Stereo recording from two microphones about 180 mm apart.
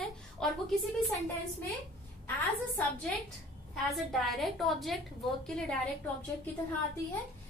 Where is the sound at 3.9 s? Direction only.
Centre (ahead or behind).